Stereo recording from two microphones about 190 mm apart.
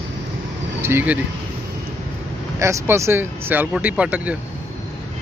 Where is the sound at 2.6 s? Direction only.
15° right (ahead or behind).